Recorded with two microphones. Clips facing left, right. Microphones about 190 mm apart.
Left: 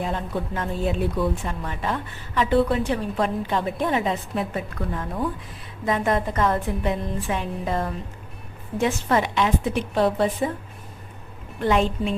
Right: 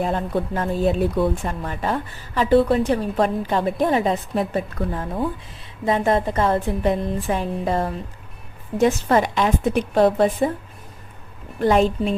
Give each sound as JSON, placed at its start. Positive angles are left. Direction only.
{"t": 0.0, "sound": "a woman's voice", "side_deg": -40}
{"t": 11.6, "sound": "speech", "side_deg": -40}